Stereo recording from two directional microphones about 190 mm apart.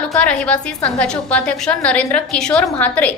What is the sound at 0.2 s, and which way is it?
A woman's voice, 5° left (ahead or behind).